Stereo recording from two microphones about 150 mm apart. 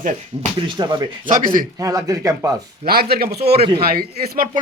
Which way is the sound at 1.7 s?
25° right (ahead or behind).